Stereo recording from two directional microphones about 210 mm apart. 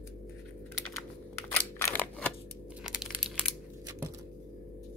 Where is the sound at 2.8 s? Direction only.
Centre (ahead or behind).